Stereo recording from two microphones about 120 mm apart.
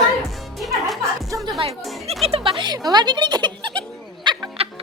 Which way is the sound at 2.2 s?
50° right (ahead or behind).